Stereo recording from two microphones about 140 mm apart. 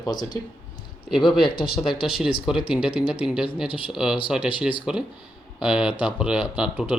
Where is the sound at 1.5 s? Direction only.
90° left.